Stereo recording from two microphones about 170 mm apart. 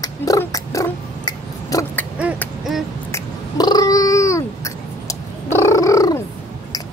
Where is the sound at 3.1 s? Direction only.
20° left (ahead or behind).